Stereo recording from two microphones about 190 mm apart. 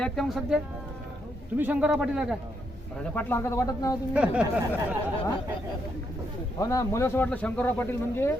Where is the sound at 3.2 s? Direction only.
10° left (ahead or behind).